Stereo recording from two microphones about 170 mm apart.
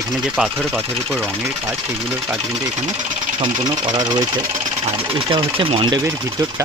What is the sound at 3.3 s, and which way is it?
Speech, 25° right (ahead or behind).